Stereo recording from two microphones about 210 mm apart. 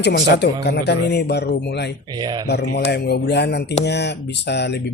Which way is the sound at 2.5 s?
50° left (ahead or behind).